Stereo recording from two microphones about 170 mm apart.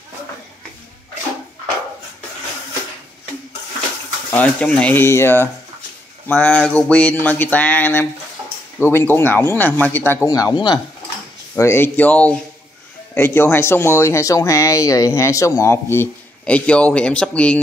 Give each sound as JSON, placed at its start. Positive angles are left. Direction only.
{"t": 4.3, "sound": "speech", "side_deg": 10}
{"t": 10.2, "sound": "speech", "side_deg": 20}
{"t": 11.5, "sound": "speech", "side_deg": 15}